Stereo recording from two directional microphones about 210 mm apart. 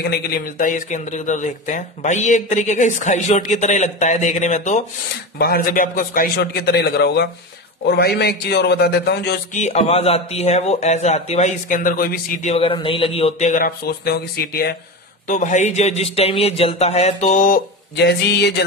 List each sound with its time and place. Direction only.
0.1 s a man's voice: 40° left (ahead or behind)
9.5 s speech: 35° left (ahead or behind)
15.2 s speech: 35° left (ahead or behind); by 18.5 s 50° left (ahead or behind)